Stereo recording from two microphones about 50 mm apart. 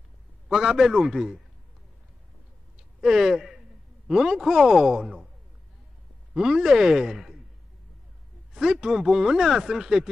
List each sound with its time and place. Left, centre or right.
0.5 s speech: centre
3.0 s a man's voice: centre
6.3 s speech: centre
8.5 s speech: centre